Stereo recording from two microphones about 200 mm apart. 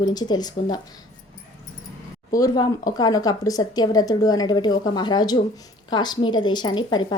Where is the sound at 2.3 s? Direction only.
15° left (ahead or behind).